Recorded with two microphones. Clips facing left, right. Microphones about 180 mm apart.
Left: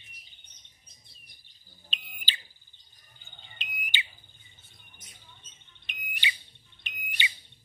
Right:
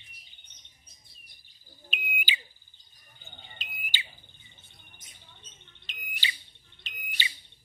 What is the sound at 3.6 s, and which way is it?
Smoke detector, 20° left (ahead or behind).